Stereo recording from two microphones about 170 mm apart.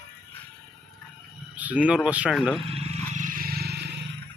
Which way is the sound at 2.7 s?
40° right (ahead or behind).